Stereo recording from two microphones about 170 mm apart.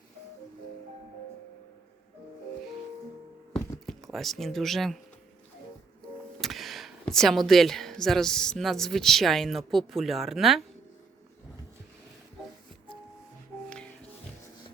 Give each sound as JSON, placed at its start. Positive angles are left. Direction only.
{"t": 3.8, "sound": "speech", "side_deg": 0}
{"t": 6.4, "sound": "speech", "side_deg": 0}